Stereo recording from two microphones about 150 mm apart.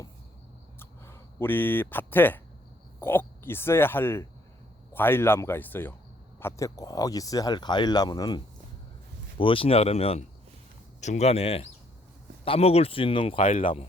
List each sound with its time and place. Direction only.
0.8 s speech: 15° left (ahead or behind)
9.4 s a man's voice: 35° left (ahead or behind)
13.4 s speech: 60° left (ahead or behind)